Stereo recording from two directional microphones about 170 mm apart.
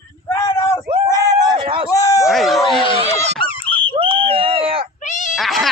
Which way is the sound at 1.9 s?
20° left (ahead or behind).